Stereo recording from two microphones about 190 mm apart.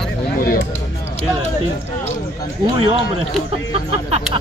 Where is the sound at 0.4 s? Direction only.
50° left (ahead or behind).